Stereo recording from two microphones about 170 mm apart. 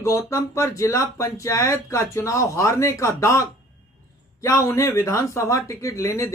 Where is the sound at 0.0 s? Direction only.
15° left (ahead or behind).